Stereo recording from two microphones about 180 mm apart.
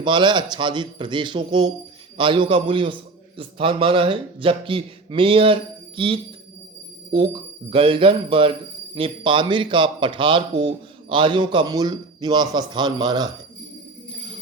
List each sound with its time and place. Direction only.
0.0 s a man's voice: 25° right (ahead or behind)
7.7 s a man's voice: 30° right (ahead or behind)